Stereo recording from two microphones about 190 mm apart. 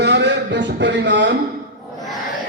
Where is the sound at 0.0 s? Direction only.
65° right (ahead or behind).